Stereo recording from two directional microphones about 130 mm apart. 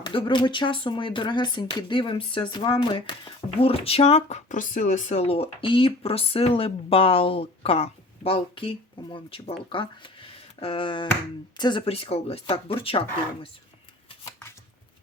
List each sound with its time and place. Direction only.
0.0 s speech: 40° left (ahead or behind)
11.9 s speech: 50° left (ahead or behind)